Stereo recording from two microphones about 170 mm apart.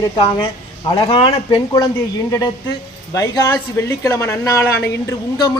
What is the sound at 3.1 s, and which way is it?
Speech, 20° left (ahead or behind).